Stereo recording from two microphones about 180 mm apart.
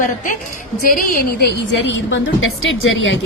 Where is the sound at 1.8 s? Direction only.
90° left.